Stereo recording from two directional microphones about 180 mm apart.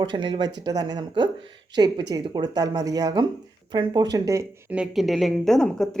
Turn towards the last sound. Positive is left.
turn(degrees=5)  # may be behind; listen again after turning